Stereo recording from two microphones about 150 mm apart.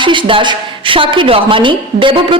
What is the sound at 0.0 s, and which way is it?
A woman's voice, 35° right (ahead or behind).